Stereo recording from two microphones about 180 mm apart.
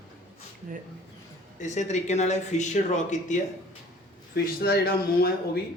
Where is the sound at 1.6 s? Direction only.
40° left (ahead or behind).